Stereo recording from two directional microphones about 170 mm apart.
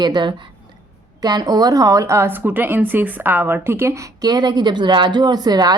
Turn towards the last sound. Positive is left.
turn(degrees=-25)  # may be behind; listen again after turning